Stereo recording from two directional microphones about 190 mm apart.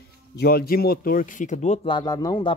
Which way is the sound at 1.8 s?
20° left (ahead or behind).